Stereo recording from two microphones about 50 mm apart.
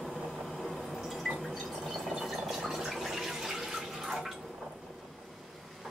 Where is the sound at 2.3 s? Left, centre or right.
Centre.